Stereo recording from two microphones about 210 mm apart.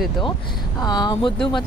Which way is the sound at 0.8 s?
20° left (ahead or behind).